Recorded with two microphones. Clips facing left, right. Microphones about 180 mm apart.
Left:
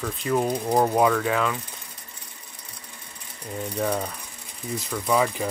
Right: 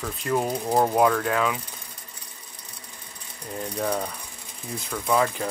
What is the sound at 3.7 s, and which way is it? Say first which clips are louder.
Speech: left 1 dB; 5° left (ahead or behind).